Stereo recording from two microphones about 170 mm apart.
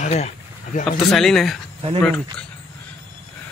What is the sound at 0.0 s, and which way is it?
Speech, 40° left (ahead or behind).